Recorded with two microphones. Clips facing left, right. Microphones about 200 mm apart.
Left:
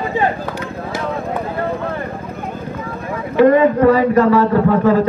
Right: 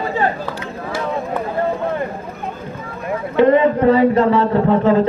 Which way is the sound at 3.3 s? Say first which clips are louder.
Left 2 dB; 25° right (ahead or behind).